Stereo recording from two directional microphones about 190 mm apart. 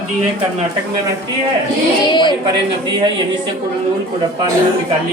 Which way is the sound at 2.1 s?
25° left (ahead or behind).